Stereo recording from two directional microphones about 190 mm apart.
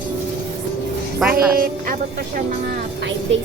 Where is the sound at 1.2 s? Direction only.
5° right (ahead or behind).